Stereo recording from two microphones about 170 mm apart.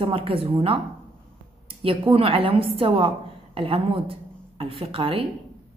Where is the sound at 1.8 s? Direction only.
35° right (ahead or behind).